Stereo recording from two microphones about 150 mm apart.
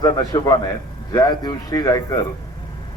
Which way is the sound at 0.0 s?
25° left (ahead or behind).